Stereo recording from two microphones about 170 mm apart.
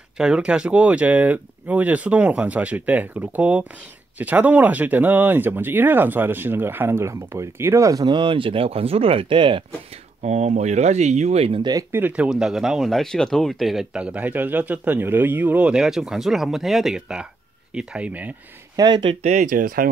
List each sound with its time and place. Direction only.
0.2 s speech: 5° right (ahead or behind); by 9.7 s 30° right (ahead or behind)
10.2 s speech: 40° right (ahead or behind)
11.7 s speech: 10° right (ahead or behind)
18.8 s speech: 25° right (ahead or behind)
19.2 s speech: 45° right (ahead or behind)